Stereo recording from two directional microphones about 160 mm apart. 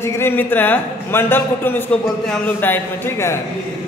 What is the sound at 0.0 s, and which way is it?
A man's voice, 15° left (ahead or behind).